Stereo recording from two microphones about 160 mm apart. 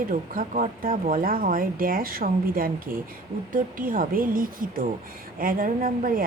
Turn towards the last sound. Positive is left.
turn(degrees=-60)  # may be behind; listen again after turning